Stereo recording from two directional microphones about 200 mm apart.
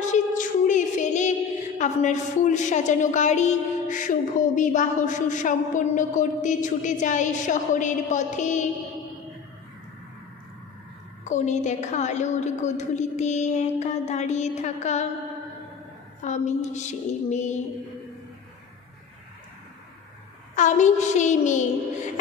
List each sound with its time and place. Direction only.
0.0 s a capella: 40° left (ahead or behind)
1.8 s a woman's voice: 35° left (ahead or behind)
11.2 s a woman's voice: 35° left (ahead or behind)
16.2 s a woman's voice: 35° left (ahead or behind)
20.5 s a woman's voice: 40° left (ahead or behind)